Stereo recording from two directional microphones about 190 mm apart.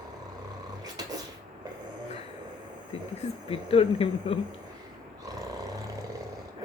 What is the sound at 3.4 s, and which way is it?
Speech, 30° left (ahead or behind).